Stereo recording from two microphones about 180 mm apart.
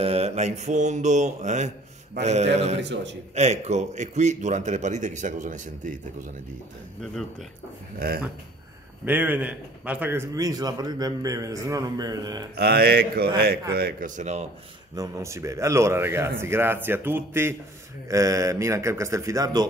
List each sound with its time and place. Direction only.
0.0 s a man's voice: 35° right (ahead or behind)
2.8 s a man's voice: 80° right
3.3 s a man's voice: 40° right (ahead or behind)
8.0 s mantra: 55° right (ahead or behind)
9.0 s a man's voice: 10° right (ahead or behind)
12.5 s mantra: 60° right (ahead or behind)
13.7 s speech: 55° right (ahead or behind); by 14.5 s 40° right (ahead or behind)
15.0 s speech: 15° right (ahead or behind)